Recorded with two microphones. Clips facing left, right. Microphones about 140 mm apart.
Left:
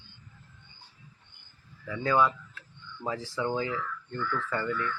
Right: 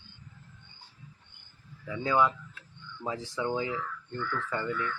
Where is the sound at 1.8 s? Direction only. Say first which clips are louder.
Left 1 dB; 15° right (ahead or behind).